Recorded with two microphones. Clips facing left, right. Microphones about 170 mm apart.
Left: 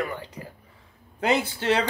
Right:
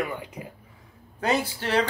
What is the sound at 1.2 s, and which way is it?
Speech, 20° left (ahead or behind).